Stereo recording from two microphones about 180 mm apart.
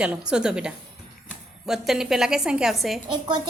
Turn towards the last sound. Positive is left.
turn(degrees=-30)  # may be behind; listen again after turning